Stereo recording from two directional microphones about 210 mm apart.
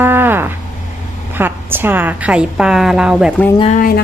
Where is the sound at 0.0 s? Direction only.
10° right (ahead or behind).